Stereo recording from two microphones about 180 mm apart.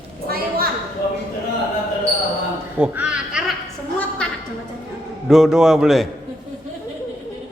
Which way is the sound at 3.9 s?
5° left (ahead or behind).